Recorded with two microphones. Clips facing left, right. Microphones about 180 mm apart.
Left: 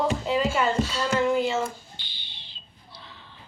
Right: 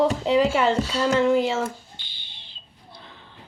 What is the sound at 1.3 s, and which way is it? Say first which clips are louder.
Speech: right 2 dB; 90° right.